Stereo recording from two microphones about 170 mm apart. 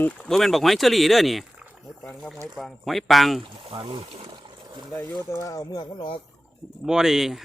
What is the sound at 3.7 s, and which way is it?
Speech, 35° right (ahead or behind).